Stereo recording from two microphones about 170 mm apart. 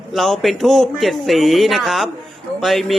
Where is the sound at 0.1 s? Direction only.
Centre (ahead or behind).